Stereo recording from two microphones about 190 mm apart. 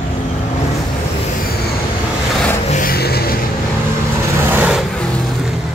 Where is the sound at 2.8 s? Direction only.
55° left (ahead or behind).